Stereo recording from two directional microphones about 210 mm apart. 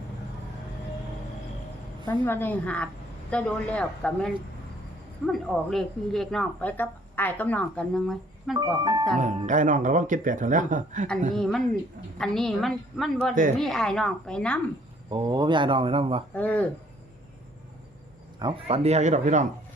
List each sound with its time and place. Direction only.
2.0 s a woman's voice: 10° left (ahead or behind)
8.5 s speech: 20° right (ahead or behind)
9.1 s speech: 35° right (ahead or behind)
11.3 s a woman's voice: 5° left (ahead or behind)
15.1 s speech: 20° right (ahead or behind)
16.3 s a woman's voice: 5° left (ahead or behind)
18.3 s speech: 25° right (ahead or behind)